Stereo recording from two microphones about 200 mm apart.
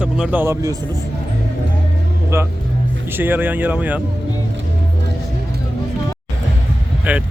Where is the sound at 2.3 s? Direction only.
15° right (ahead or behind).